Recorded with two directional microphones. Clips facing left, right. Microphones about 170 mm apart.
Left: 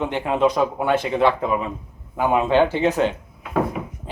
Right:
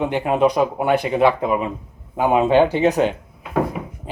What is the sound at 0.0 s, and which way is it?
Speech, 15° right (ahead or behind).